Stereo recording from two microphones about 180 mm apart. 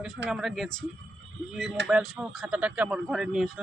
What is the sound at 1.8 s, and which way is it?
Speech, 5° right (ahead or behind).